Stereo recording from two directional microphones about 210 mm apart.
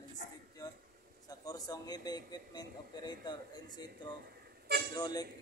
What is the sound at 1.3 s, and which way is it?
A man's voice, 15° left (ahead or behind).